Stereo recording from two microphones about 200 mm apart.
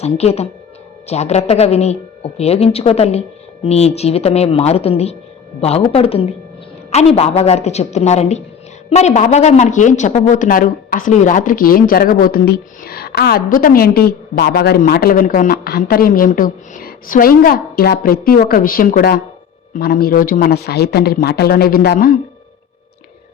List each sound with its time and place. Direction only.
0.0 s speech: 30° left (ahead or behind); by 22.1 s 50° left (ahead or behind)